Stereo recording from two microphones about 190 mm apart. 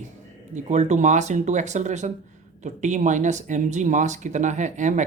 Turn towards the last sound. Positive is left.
turn(degrees=-40)  # may be behind; listen again after turning